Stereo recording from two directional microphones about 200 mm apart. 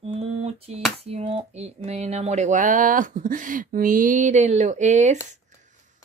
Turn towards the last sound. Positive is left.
turn(degrees=-35)  # may be behind; listen again after turning